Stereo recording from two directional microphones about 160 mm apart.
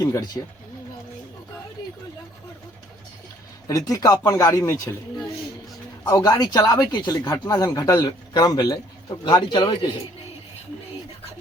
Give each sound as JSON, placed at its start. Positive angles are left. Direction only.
{"t": 0.0, "sound": "a man's voice", "side_deg": 25}
{"t": 3.7, "sound": "a man's voice", "side_deg": 20}
{"t": 6.1, "sound": "a man's voice", "side_deg": 25}